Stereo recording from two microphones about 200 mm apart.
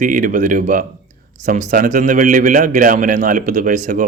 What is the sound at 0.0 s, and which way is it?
A man's voice, 40° right (ahead or behind).